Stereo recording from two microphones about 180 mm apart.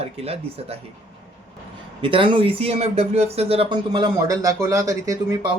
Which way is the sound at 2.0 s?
30° right (ahead or behind).